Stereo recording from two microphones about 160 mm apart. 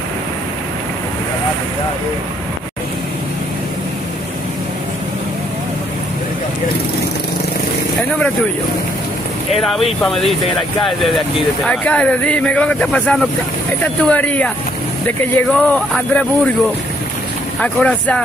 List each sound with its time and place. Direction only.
10.0 s speech: centre (ahead or behind)
17.6 s speech: 10° left (ahead or behind)